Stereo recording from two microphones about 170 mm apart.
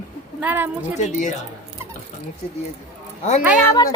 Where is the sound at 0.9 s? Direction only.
45° left (ahead or behind).